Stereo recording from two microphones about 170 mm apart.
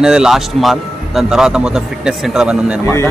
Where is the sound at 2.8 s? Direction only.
15° left (ahead or behind).